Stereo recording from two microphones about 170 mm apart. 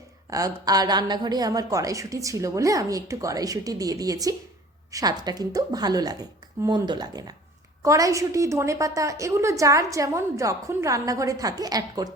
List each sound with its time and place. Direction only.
0.3 s a woman's voice: 20° right (ahead or behind)